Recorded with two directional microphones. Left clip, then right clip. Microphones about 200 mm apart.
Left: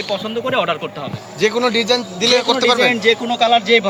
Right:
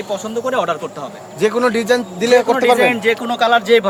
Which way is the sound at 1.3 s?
65° right (ahead or behind).